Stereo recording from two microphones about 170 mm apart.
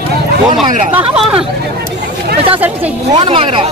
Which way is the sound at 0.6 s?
45° right (ahead or behind).